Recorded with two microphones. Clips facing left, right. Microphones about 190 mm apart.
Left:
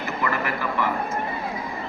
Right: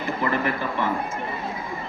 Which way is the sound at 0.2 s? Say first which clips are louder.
Right 2 dB; 30° right (ahead or behind).